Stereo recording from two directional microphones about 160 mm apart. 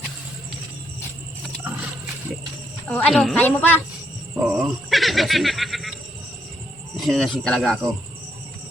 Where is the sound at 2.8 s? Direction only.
10° left (ahead or behind).